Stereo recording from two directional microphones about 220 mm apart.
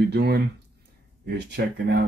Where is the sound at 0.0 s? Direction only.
50° right (ahead or behind).